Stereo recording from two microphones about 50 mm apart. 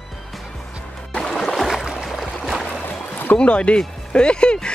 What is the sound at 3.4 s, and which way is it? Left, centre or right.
Speech, left.